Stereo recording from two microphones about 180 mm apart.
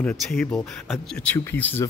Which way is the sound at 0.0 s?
5° left (ahead or behind).